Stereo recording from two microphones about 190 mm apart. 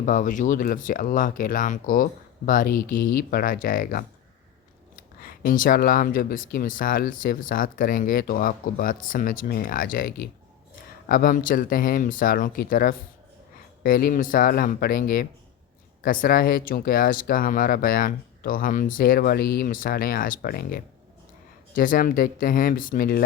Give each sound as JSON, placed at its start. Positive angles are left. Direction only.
{"t": 0.0, "sound": "speech", "side_deg": 40}
{"t": 5.2, "sound": "speech", "side_deg": 50}